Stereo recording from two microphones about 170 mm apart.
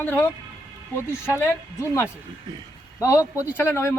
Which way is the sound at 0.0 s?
10° left (ahead or behind).